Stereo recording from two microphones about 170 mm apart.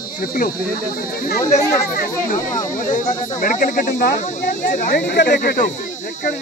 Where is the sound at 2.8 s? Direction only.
50° left (ahead or behind).